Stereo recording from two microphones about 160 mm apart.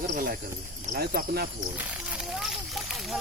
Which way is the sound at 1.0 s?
75° right (ahead or behind).